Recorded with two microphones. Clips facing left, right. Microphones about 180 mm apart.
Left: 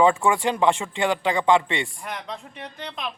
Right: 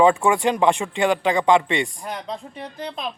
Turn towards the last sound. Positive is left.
turn(degrees=-35)  # may be behind; listen again after turning